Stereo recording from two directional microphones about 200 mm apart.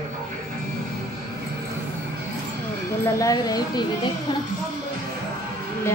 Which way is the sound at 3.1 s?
15° left (ahead or behind).